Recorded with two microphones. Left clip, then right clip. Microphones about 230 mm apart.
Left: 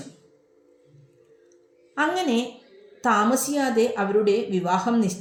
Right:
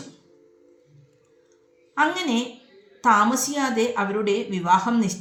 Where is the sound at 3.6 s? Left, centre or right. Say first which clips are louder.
Even; right.